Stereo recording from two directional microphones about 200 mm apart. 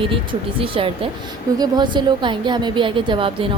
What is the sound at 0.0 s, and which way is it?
A woman's voice, 25° right (ahead or behind).